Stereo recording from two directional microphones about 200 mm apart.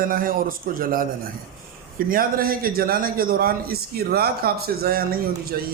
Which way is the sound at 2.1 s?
45° right (ahead or behind).